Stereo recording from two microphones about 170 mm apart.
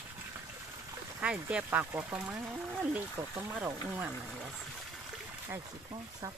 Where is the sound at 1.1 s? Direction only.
10° right (ahead or behind).